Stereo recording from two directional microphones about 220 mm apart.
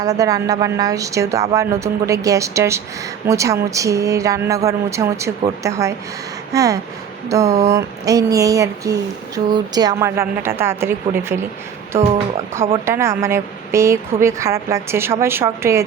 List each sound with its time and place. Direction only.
0.0 s speech: 15° right (ahead or behind)
12.8 s speech: 10° right (ahead or behind)